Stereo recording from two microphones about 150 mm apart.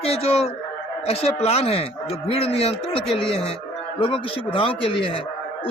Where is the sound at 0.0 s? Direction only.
40° left (ahead or behind).